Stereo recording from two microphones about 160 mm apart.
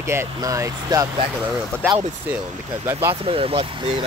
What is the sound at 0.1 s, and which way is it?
Speech, 20° right (ahead or behind).